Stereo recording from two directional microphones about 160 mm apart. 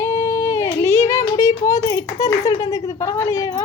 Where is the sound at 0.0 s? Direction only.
20° left (ahead or behind).